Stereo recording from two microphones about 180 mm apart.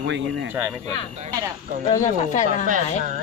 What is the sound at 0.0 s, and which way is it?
Speech, 80° right.